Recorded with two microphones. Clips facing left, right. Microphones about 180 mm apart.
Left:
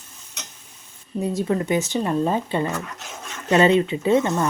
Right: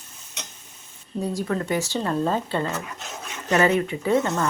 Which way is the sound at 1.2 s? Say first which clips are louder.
Left 3 dB; 20° left (ahead or behind).